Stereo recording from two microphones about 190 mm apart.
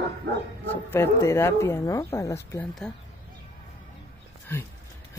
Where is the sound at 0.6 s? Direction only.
10° left (ahead or behind).